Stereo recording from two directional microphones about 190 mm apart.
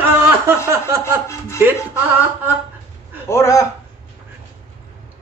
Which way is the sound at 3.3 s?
15° left (ahead or behind).